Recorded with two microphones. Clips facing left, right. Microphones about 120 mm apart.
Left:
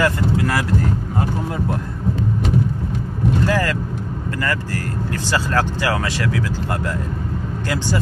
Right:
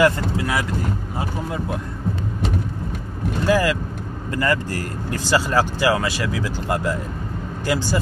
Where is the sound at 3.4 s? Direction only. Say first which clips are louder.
Right 1 dB; 10° right (ahead or behind).